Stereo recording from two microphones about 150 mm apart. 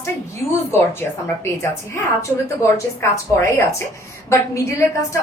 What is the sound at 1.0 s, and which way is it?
A woman's voice, 15° left (ahead or behind).